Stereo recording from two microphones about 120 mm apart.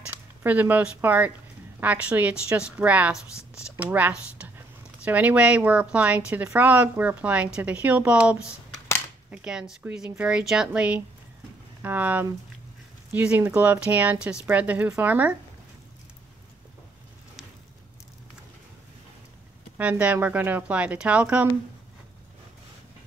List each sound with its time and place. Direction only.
0.1 s speech: 15° right (ahead or behind)
19.8 s speech: 10° right (ahead or behind)